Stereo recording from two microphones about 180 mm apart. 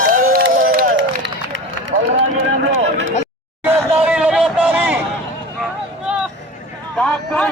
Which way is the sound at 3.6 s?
10° right (ahead or behind).